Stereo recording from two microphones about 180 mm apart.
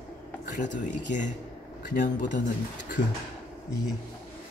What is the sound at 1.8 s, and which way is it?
Speech, 45° left (ahead or behind).